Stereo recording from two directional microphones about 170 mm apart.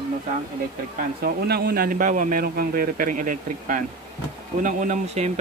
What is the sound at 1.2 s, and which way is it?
Speech, 70° right (ahead or behind).